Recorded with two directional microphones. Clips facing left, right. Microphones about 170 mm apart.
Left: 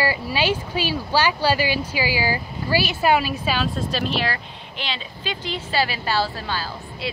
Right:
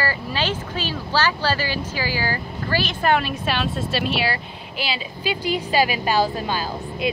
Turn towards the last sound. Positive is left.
turn(degrees=-15)  # may be behind; listen again after turning